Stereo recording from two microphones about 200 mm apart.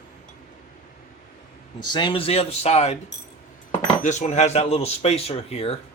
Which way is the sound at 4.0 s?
35° left (ahead or behind).